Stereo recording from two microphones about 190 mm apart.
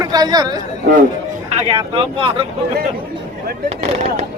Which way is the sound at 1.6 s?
25° right (ahead or behind).